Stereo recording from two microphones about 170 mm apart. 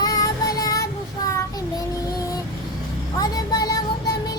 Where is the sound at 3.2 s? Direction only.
20° left (ahead or behind).